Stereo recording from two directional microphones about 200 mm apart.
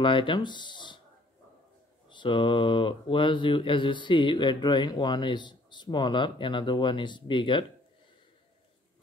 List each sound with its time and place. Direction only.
0.0 s speech: 25° left (ahead or behind)
2.0 s mantra: 25° left (ahead or behind)